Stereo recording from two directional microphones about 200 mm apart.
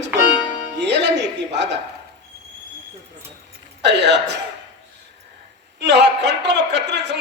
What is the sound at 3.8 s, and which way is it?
Speech, 60° right (ahead or behind).